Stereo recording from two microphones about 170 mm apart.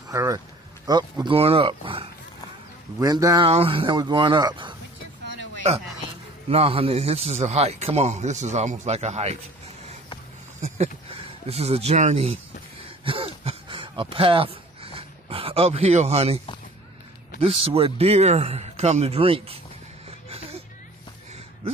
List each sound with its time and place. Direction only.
0.1 s a man's voice: 20° right (ahead or behind)
3.0 s speech: 20° right (ahead or behind)
3.4 s speech: 35° right (ahead or behind)
6.5 s a man's voice: 35° right (ahead or behind)
10.6 s a sound: 35° right (ahead or behind)
17.4 s a man's voice: 35° right (ahead or behind)